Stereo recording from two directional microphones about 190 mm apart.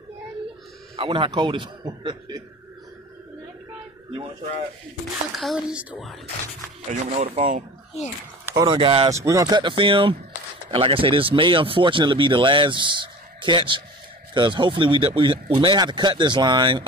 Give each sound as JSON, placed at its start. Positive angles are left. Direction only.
{"t": 0.9, "sound": "speech", "side_deg": -30}
{"t": 5.3, "sound": "a woman's voice", "side_deg": 0}
{"t": 6.9, "sound": "speech", "side_deg": -35}
{"t": 8.5, "sound": "speech", "side_deg": -25}
{"t": 9.1, "sound": "speech", "side_deg": -15}